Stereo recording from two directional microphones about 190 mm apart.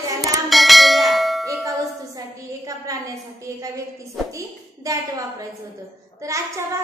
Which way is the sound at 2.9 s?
20° right (ahead or behind).